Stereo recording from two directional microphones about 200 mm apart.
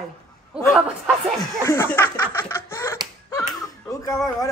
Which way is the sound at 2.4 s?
15° left (ahead or behind).